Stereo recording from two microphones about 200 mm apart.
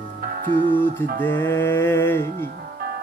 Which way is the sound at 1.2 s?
10° left (ahead or behind).